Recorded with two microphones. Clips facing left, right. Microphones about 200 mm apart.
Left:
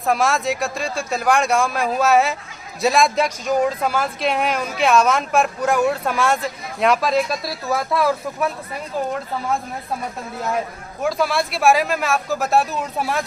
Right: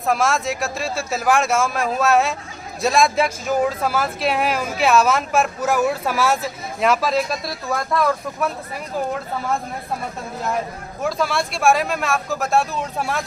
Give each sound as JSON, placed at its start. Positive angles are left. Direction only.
{"t": 0.0, "sound": "speech", "side_deg": 0}
{"t": 11.0, "sound": "speech", "side_deg": 0}